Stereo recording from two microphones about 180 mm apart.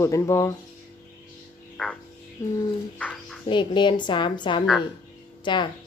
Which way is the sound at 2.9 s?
5° left (ahead or behind).